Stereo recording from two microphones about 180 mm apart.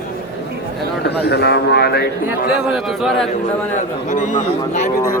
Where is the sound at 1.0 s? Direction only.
65° left (ahead or behind).